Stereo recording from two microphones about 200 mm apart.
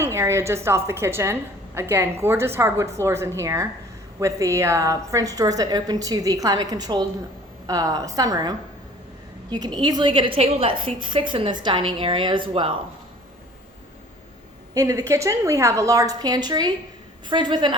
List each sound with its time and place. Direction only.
0.0 s a woman's voice: 15° right (ahead or behind)
14.7 s a woman's voice: 15° right (ahead or behind)